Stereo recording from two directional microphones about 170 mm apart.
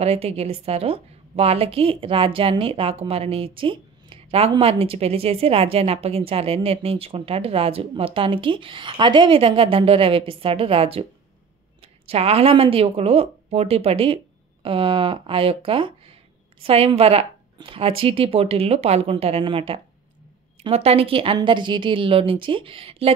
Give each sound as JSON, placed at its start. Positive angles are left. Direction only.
{"t": 0.0, "sound": "a woman's voice", "side_deg": -35}
{"t": 12.1, "sound": "a woman's voice", "side_deg": -35}